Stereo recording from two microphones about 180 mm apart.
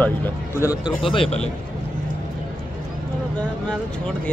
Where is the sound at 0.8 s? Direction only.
30° left (ahead or behind).